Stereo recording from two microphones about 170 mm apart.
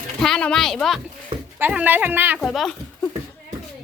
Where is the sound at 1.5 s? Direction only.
10° right (ahead or behind).